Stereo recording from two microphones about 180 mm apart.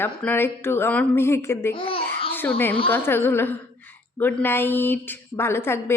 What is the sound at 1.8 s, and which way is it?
Speech, 30° left (ahead or behind).